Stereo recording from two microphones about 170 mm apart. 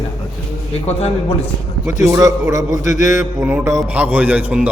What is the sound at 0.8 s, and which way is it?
Speech, 40° left (ahead or behind).